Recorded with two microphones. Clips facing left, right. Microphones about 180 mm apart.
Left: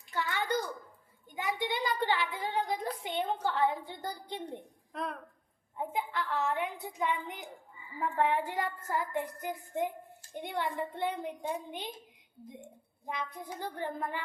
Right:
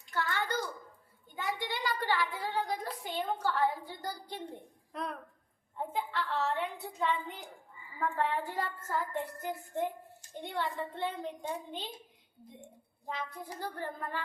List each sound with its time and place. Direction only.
0.1 s bathtub: 15° left (ahead or behind)
1.3 s a child's voice: 15° left (ahead or behind)
4.9 s speech: centre (ahead or behind)
5.7 s a woman's voice: 15° left (ahead or behind)
13.1 s a woman's voice: 15° left (ahead or behind)